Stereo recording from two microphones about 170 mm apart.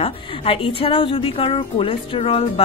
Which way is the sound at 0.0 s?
30° left (ahead or behind).